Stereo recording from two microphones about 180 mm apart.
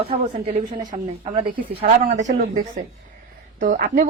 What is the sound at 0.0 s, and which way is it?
Speech, 35° right (ahead or behind).